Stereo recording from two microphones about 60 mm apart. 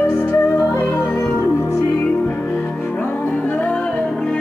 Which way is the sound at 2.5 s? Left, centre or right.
Left.